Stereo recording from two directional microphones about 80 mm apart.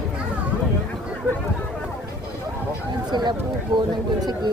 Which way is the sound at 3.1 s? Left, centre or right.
Right.